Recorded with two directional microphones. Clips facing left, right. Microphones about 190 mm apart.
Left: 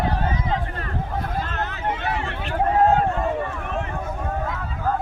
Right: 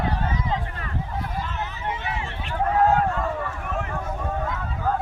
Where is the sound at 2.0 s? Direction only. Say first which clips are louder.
Left 4 dB; 65° left (ahead or behind).